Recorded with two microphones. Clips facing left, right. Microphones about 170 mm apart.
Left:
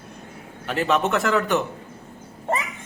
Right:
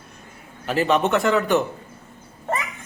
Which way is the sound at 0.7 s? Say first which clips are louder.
Right 2 dB; centre (ahead or behind).